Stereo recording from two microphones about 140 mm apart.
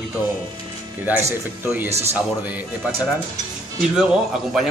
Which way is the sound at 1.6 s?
10° right (ahead or behind).